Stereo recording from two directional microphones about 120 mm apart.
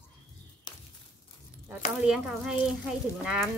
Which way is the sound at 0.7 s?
35° left (ahead or behind).